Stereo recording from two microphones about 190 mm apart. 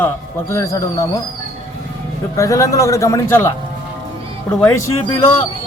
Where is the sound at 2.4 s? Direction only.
15° left (ahead or behind).